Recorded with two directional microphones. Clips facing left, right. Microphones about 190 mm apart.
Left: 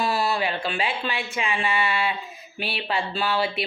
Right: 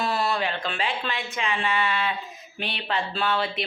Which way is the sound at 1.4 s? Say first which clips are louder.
Left 1 dB; 10° left (ahead or behind).